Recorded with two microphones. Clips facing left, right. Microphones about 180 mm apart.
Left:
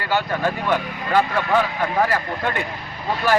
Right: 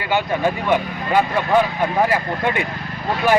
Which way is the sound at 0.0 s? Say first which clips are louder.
Right 2 dB; 15° right (ahead or behind).